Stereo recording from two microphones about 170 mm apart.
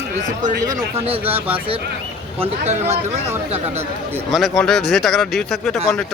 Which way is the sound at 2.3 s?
40° right (ahead or behind).